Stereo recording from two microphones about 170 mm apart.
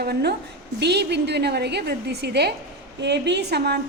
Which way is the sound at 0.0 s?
70° right (ahead or behind).